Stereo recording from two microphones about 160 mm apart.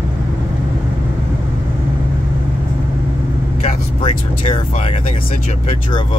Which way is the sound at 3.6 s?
40° left (ahead or behind).